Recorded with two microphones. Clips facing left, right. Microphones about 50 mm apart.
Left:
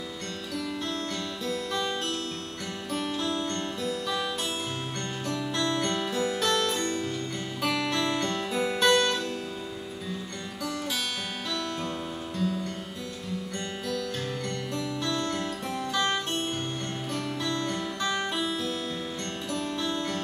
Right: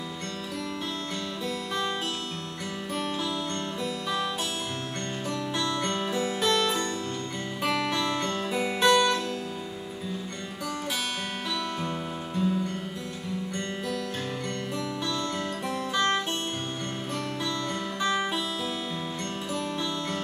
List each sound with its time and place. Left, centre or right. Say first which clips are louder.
2.9 s music: left 1 dB; centre
5.3 s music: left 2 dB; centre
7.9 s music: even; centre
12.4 s music: right 3 dB; centre
15.9 s music: right 2 dB; centre
17.6 s music: right 1 dB; centre